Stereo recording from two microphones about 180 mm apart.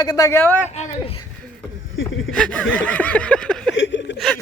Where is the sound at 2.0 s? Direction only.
90° left.